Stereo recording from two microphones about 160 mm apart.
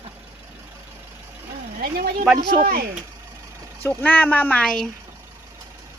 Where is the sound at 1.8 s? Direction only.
65° right (ahead or behind).